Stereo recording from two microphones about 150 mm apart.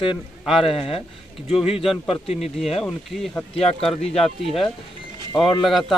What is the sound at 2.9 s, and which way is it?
Speech, centre (ahead or behind).